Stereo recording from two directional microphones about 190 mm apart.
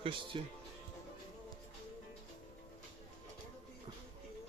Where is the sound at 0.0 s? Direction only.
25° right (ahead or behind).